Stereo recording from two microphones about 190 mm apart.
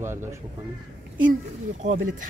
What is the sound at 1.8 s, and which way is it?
Speech, 45° right (ahead or behind).